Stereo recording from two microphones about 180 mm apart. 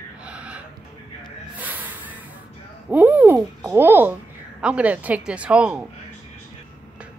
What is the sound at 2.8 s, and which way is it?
Speech, 10° right (ahead or behind).